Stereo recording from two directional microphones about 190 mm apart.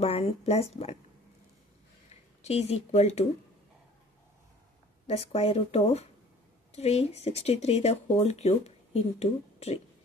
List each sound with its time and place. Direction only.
0.0 s speech: 30° left (ahead or behind)
2.4 s speech: 35° left (ahead or behind)
5.0 s speech: 35° left (ahead or behind)